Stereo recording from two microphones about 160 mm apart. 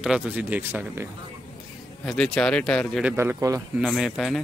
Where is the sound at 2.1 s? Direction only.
5° left (ahead or behind).